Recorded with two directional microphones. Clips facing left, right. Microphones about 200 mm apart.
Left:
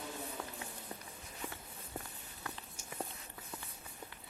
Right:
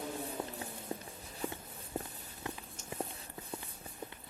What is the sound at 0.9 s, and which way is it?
Walk, 25° right (ahead or behind).